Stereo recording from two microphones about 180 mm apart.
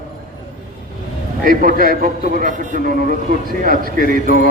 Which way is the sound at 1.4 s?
55° right (ahead or behind).